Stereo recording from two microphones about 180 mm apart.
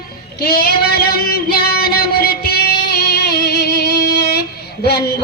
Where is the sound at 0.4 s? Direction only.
60° left (ahead or behind).